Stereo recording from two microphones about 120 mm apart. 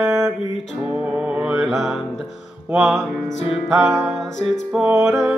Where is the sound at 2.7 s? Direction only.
5° right (ahead or behind).